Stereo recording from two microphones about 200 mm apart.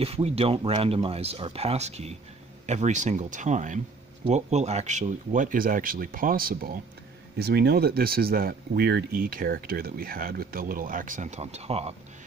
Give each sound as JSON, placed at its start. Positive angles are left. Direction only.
{"t": 0.0, "sound": "speech", "side_deg": -30}